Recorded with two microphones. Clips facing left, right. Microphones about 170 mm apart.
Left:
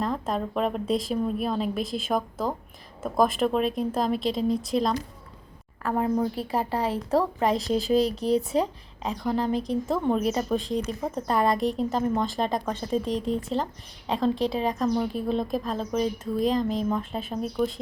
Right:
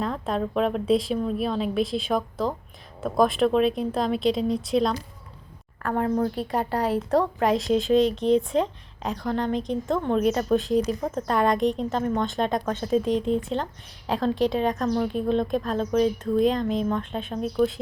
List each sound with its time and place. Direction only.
0.0 s a woman's voice: centre (ahead or behind)
8.0 s speech: 35° left (ahead or behind)
8.4 s a woman's voice: 5° left (ahead or behind)